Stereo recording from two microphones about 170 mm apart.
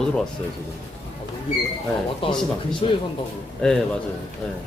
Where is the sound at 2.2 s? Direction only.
30° left (ahead or behind).